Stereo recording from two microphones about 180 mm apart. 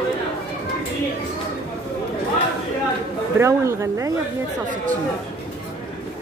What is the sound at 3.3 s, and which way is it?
Speech, 15° right (ahead or behind).